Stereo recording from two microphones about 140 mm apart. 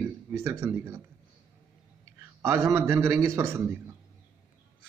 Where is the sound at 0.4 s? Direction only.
20° right (ahead or behind).